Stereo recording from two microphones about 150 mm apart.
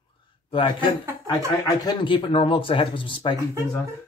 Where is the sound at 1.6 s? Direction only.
30° left (ahead or behind).